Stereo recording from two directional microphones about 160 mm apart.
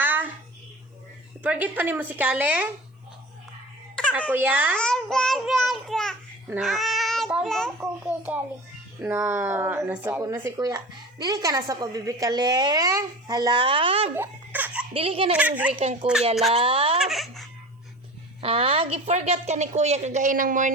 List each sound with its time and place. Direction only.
0.0 s a sound: 10° right (ahead or behind)
1.4 s a woman's voice: 10° right (ahead or behind)
4.3 s a woman's voice: 10° right (ahead or behind)
4.8 s a child's voice: 5° left (ahead or behind)
8.0 s a woman's voice: 10° right (ahead or behind); by 14.1 s 35° right (ahead or behind)
14.2 s laughter: 10° right (ahead or behind)
14.9 s speech: 35° right (ahead or behind)
15.3 s a woman's voice: 10° right (ahead or behind)
15.8 s speech: 40° right (ahead or behind)
17.0 s baby laughter: centre (ahead or behind)
18.4 s a woman's voice: 35° right (ahead or behind); by 20.7 s 55° right (ahead or behind)